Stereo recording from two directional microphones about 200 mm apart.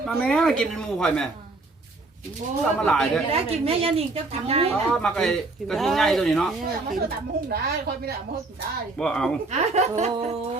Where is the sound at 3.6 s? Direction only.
30° right (ahead or behind).